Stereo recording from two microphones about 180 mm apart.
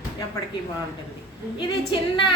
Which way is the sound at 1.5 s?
25° left (ahead or behind).